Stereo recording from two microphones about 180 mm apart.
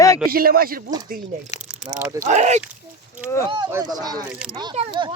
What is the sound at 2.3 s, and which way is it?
Speech, 40° right (ahead or behind).